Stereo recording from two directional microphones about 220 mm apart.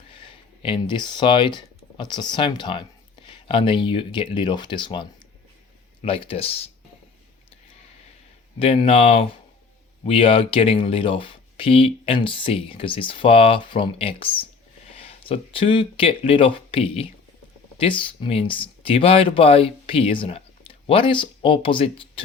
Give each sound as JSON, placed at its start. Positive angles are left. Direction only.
{"t": 0.1, "sound": "speech", "side_deg": 25}
{"t": 8.5, "sound": "speech", "side_deg": 25}